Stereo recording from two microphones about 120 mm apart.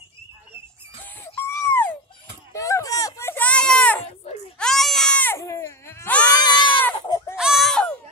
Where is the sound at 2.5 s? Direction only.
30° left (ahead or behind); by 5.2 s 5° left (ahead or behind).